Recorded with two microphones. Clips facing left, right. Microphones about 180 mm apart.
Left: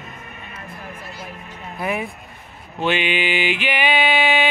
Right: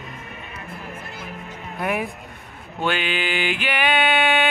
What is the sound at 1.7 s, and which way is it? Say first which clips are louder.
Speech: even; centre (ahead or behind).